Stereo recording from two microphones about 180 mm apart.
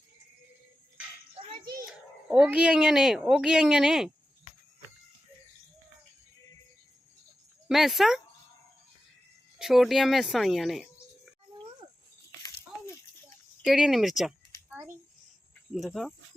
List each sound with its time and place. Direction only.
1.9 s speech: 5° right (ahead or behind)
7.7 s speech: centre (ahead or behind)
9.6 s speech: centre (ahead or behind)
12.4 s a sound: 20° left (ahead or behind)
13.6 s a sound: 5° right (ahead or behind)
15.7 s speech: centre (ahead or behind)